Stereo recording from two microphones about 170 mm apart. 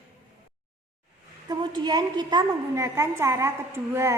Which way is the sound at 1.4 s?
25° right (ahead or behind).